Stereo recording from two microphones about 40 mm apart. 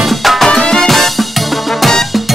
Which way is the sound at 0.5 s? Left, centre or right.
Centre.